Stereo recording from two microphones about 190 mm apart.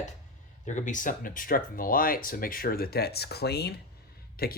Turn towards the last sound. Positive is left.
turn(degrees=55)  # may be behind; listen again after turning